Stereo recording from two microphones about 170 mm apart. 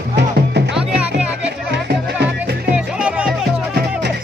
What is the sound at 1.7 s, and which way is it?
Music, 80° right.